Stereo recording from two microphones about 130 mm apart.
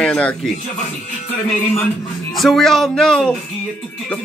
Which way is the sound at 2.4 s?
Centre (ahead or behind).